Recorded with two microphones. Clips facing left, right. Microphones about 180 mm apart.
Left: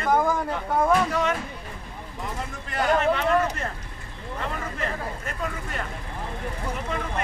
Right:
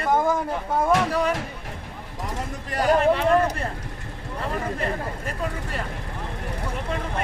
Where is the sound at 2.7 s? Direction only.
35° right (ahead or behind).